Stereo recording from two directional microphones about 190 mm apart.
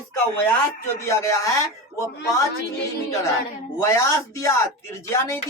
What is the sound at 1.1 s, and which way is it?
Speech, 15° left (ahead or behind).